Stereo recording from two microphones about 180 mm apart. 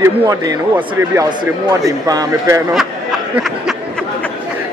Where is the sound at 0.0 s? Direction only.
20° right (ahead or behind).